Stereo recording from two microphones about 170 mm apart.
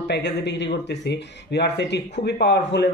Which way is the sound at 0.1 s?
90° left.